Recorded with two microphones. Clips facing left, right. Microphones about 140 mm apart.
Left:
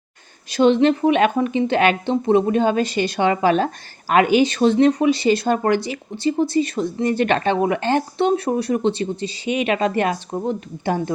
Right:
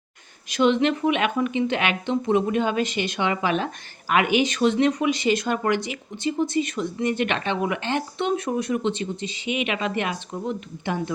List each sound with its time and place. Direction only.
0.4 s speech: 35° left (ahead or behind)